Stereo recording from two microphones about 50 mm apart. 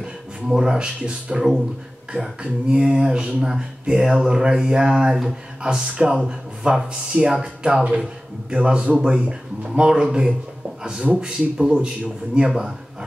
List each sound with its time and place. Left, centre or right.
0.5 s speech: centre
2.1 s speech: right
2.7 s speech: centre